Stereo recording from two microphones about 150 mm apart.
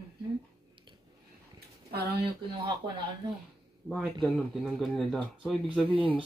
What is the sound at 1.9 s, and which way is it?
Speech, 90° right.